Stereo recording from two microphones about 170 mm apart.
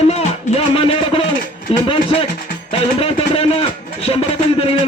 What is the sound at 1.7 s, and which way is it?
Speech, 35° left (ahead or behind).